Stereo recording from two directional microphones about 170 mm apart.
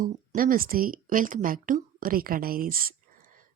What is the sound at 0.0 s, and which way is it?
Speech, 55° right (ahead or behind).